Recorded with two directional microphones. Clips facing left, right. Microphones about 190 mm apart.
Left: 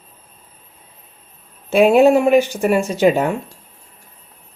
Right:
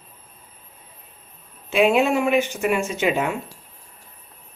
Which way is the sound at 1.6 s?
40° left (ahead or behind).